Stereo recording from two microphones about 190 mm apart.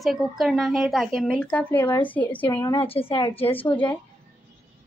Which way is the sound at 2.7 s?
30° left (ahead or behind).